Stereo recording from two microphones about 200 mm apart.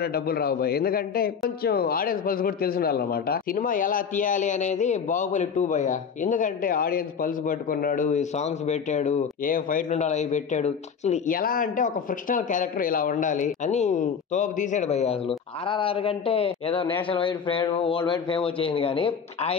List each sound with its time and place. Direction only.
0.0 s a man's voice: 50° left (ahead or behind); by 19.5 s 25° left (ahead or behind)